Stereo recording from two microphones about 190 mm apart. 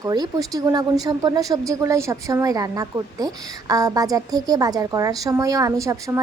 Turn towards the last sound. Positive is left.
turn(degrees=-15)  # may be behind; listen again after turning